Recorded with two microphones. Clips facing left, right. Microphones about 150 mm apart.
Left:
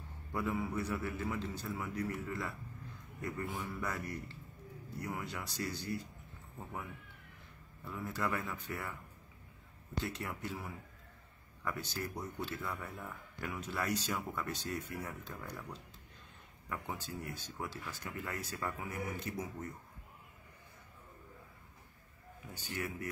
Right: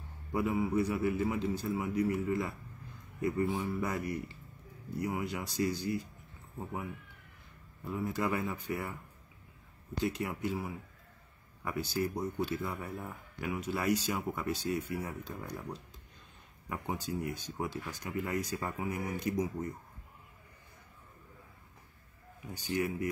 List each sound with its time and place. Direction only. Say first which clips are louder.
0.3 s speech: right 6 dB; 15° right (ahead or behind)
7.8 s speech: right 5 dB; 15° right (ahead or behind)
10.0 s speech: right 9 dB; 15° right (ahead or behind)
12.6 s speech: right 4 dB; 30° right (ahead or behind)
13.4 s speech: right 5 dB; 10° right (ahead or behind)
16.6 s speech: right 5 dB; 20° right (ahead or behind)
22.5 s speech: right 8 dB; 15° right (ahead or behind)